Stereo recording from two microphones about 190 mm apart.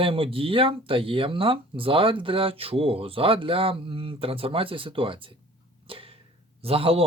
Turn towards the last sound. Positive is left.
turn(degrees=-30)  # may be behind; listen again after turning